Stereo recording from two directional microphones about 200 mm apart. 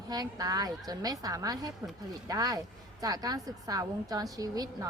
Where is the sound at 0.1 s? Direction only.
20° right (ahead or behind).